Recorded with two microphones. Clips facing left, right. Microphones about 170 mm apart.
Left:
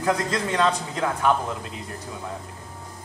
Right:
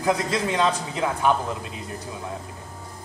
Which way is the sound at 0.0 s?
10° right (ahead or behind).